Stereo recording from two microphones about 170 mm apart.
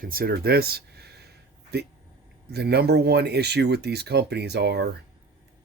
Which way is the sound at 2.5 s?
75° right (ahead or behind).